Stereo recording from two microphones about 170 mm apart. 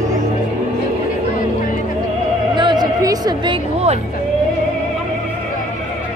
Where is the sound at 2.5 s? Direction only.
25° right (ahead or behind).